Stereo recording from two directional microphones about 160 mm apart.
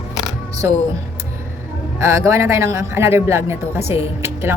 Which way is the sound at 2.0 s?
15° right (ahead or behind).